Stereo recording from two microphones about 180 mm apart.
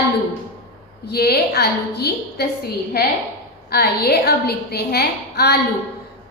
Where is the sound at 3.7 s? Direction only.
60° left (ahead or behind).